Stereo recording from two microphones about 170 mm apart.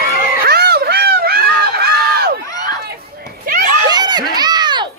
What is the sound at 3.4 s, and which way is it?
Children playing, 55° right (ahead or behind).